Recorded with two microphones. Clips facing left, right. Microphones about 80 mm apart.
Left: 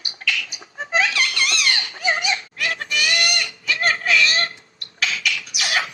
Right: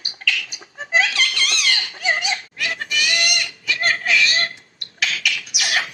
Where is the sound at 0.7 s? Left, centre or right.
Left.